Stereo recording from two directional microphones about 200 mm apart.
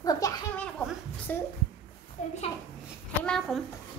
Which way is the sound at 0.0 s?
20° left (ahead or behind).